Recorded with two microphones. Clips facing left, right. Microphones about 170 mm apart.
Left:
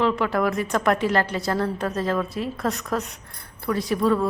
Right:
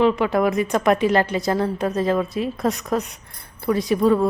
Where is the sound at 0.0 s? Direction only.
20° right (ahead or behind).